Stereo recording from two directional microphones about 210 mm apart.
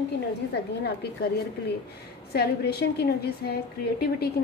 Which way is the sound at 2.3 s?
50° left (ahead or behind).